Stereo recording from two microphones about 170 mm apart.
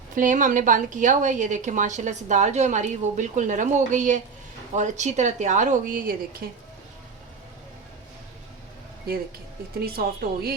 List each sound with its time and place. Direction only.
0.2 s a woman's voice: 50° right (ahead or behind)
9.8 s a woman's voice: 65° right (ahead or behind)